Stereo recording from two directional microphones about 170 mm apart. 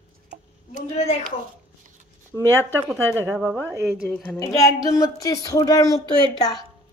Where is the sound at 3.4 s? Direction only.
15° right (ahead or behind).